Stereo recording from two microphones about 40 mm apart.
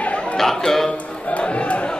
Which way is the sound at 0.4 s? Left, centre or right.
Centre.